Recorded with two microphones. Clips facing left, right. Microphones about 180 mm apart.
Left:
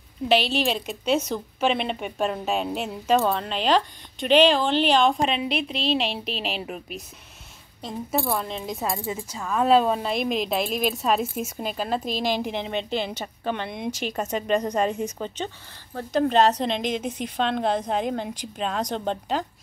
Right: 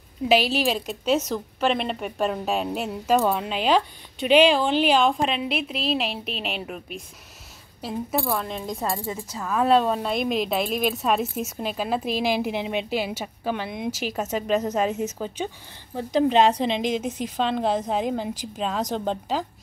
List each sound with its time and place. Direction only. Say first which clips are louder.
0.3 s speech: right 1 dB; 5° right (ahead or behind)
8.8 s speech: even; 10° left (ahead or behind)
9.3 s speech: even; 5° right (ahead or behind)